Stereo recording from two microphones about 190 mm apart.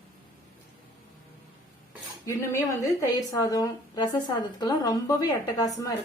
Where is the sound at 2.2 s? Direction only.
15° left (ahead or behind).